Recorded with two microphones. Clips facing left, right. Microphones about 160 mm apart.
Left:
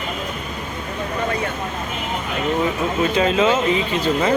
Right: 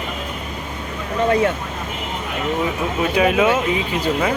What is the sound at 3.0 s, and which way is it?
Speech, 10° right (ahead or behind).